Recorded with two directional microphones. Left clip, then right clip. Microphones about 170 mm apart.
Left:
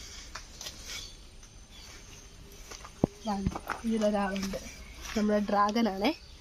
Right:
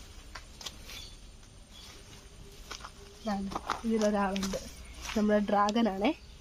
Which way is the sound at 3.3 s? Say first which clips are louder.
Even; 10° right (ahead or behind).